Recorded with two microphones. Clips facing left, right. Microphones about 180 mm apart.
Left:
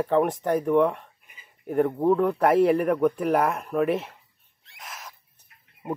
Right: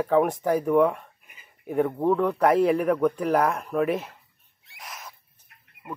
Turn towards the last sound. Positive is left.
turn(degrees=0)  # may be behind; listen again after turning